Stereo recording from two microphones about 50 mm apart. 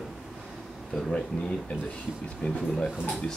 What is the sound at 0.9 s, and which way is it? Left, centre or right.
Speech, centre.